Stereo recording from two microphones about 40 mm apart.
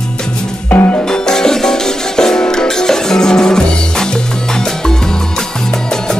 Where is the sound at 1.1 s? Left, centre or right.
Centre.